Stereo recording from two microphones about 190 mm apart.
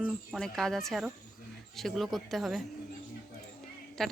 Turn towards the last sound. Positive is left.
turn(degrees=0)  # may be behind; listen again after turning